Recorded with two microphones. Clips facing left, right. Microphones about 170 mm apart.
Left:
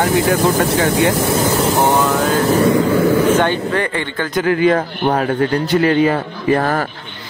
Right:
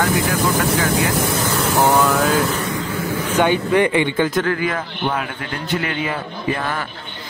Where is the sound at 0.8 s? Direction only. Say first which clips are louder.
Left 4 dB; 30° left (ahead or behind).